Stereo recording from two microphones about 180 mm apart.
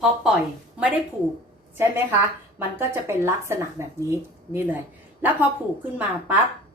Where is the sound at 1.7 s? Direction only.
10° right (ahead or behind).